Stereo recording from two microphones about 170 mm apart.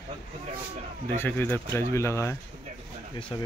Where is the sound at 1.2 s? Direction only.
10° left (ahead or behind).